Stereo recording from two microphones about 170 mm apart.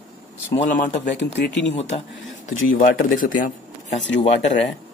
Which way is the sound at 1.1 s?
90° left.